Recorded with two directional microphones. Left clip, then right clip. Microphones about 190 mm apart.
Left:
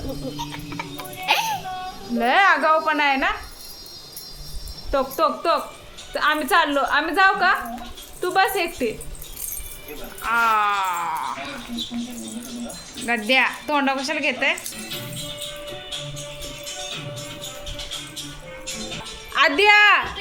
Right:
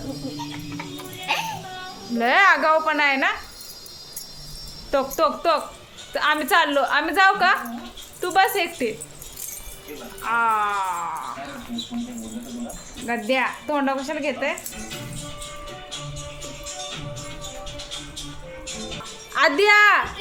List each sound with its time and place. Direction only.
0.3 s music: 60° left (ahead or behind)
2.1 s a woman's voice: centre (ahead or behind)
4.9 s a woman's voice: 5° right (ahead or behind)
10.2 s speech: 5° left (ahead or behind)
13.1 s a woman's voice: 5° left (ahead or behind)
19.3 s a woman's voice: centre (ahead or behind)